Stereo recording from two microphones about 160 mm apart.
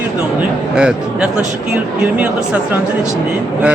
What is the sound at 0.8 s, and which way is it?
Speech, 5° right (ahead or behind).